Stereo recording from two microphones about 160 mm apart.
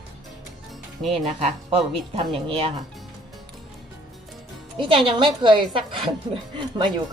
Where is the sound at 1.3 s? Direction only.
40° right (ahead or behind).